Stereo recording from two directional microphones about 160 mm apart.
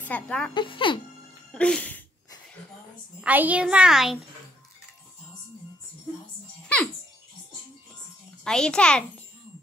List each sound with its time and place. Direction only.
0.0 s speech: 10° left (ahead or behind)
0.6 s speech: 30° left (ahead or behind)
1.5 s music: 5° left (ahead or behind)
3.2 s a child's voice: 10° right (ahead or behind)
8.5 s a child's voice: 5° left (ahead or behind)